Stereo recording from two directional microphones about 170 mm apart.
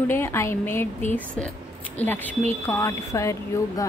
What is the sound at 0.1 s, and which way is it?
Speech, 15° left (ahead or behind).